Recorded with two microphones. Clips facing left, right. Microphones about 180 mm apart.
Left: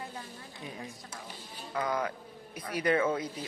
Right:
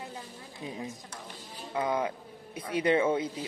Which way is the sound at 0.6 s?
20° right (ahead or behind).